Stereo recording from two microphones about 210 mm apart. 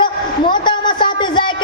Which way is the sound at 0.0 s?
20° left (ahead or behind).